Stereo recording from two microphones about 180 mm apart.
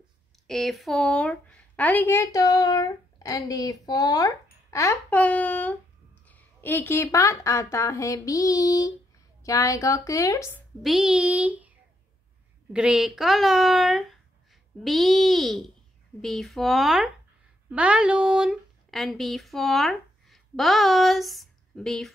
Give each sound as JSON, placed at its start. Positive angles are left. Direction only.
{"t": 0.5, "sound": "a woman's voice", "side_deg": 0}
{"t": 10.8, "sound": "speech", "side_deg": 0}
{"t": 12.7, "sound": "speech", "side_deg": -5}